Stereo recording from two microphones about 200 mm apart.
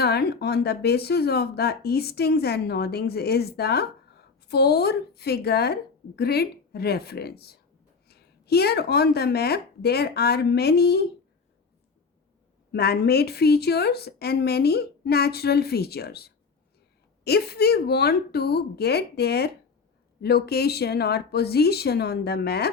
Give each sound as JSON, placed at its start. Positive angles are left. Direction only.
{"t": 0.0, "sound": "speech", "side_deg": 55}
{"t": 12.7, "sound": "speech", "side_deg": 50}